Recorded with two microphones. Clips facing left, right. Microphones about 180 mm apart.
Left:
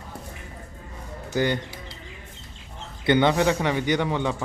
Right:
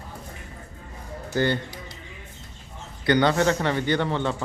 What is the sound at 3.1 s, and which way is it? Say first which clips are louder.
A man's voice: left 1 dB; 20° left (ahead or behind).